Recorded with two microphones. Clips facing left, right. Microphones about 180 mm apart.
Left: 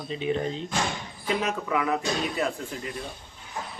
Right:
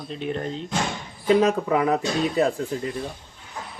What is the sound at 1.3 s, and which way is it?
Speech, 35° right (ahead or behind).